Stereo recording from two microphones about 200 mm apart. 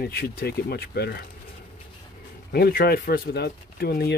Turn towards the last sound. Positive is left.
turn(degrees=50)  # may be behind; listen again after turning